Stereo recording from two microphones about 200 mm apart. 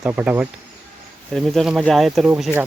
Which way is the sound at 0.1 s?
10° right (ahead or behind).